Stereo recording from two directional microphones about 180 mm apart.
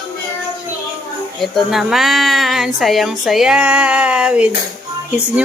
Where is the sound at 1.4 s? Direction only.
Centre (ahead or behind).